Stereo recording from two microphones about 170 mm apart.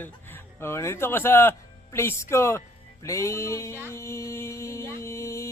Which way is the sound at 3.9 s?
15° left (ahead or behind).